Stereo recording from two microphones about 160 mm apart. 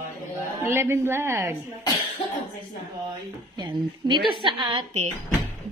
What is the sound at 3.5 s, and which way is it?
A woman's voice, 30° right (ahead or behind).